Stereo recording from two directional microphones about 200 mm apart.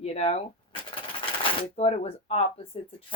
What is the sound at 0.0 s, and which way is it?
Cash register, 30° left (ahead or behind).